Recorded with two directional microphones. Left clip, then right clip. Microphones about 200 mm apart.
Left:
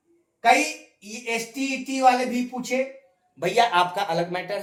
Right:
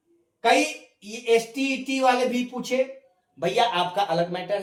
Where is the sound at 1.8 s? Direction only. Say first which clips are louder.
Left 2 dB; 10° left (ahead or behind).